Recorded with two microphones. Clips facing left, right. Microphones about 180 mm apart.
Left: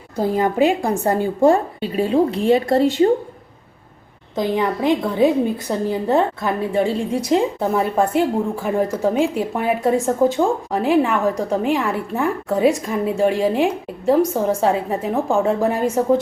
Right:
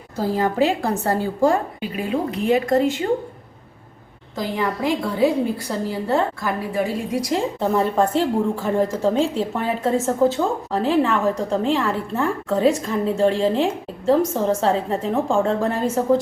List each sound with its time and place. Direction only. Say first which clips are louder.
0.2 s a woman's voice: left 2 dB; 20° left (ahead or behind); by 3.1 s 35° left (ahead or behind)
4.4 s a woman's voice: left 4 dB; 20° left (ahead or behind)
7.6 s a woman's voice: even; 10° left (ahead or behind)